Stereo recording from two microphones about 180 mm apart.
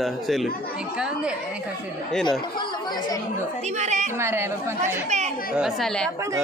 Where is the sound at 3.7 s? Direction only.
40° right (ahead or behind).